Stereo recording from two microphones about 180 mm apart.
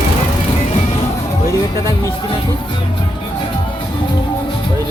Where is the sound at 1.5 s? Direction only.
15° left (ahead or behind).